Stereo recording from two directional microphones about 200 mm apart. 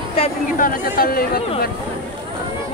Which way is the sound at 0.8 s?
50° left (ahead or behind).